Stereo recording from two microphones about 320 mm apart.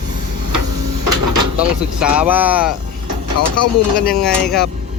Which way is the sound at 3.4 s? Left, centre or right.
Left.